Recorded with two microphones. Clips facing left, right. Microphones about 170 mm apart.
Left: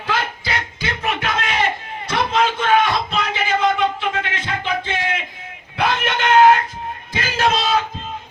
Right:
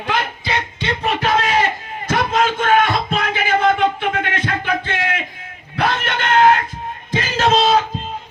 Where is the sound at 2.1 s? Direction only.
50° right (ahead or behind).